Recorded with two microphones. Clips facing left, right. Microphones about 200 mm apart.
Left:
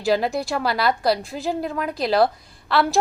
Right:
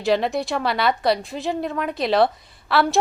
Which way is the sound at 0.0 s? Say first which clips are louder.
Even; centre (ahead or behind).